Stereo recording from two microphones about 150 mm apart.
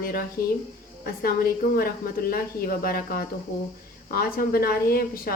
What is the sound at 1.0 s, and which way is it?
A woman's voice, 90° left.